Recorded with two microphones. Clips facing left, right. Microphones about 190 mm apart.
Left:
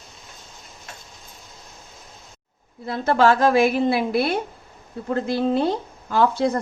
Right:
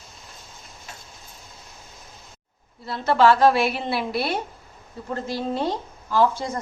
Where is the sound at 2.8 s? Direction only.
50° left (ahead or behind).